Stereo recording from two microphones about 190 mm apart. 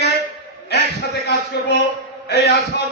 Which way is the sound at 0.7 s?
65° left (ahead or behind).